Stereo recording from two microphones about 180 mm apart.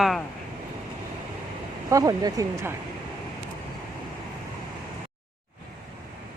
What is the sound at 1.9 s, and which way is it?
Speech, 20° right (ahead or behind).